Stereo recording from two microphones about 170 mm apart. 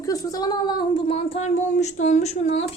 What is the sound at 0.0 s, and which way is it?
Speech, 20° left (ahead or behind).